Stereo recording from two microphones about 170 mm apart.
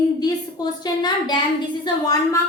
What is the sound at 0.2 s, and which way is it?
A woman's voice, 25° left (ahead or behind).